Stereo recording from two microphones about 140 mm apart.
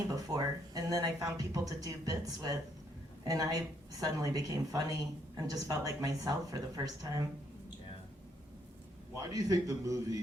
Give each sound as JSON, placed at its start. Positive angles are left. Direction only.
{"t": 0.1, "sound": "speech", "side_deg": -25}
{"t": 9.3, "sound": "speech", "side_deg": -25}